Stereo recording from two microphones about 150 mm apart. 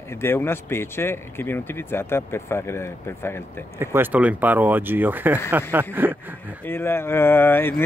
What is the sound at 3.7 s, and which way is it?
Speech, 15° right (ahead or behind).